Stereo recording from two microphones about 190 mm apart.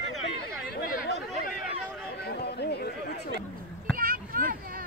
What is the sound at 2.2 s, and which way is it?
Chatter, 60° left (ahead or behind).